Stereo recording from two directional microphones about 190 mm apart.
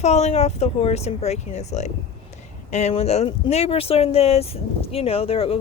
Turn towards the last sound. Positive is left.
turn(degrees=30)  # may be behind; listen again after turning